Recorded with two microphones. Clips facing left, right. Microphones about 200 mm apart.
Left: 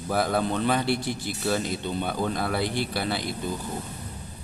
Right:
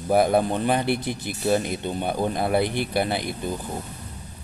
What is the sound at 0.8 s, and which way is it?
Speech, 55° right (ahead or behind).